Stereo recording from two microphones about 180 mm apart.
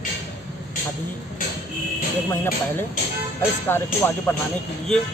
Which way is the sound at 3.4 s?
15° left (ahead or behind).